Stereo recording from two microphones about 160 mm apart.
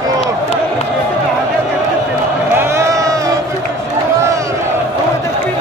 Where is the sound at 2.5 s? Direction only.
15° right (ahead or behind).